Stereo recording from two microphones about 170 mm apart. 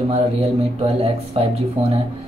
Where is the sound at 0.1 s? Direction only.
35° right (ahead or behind).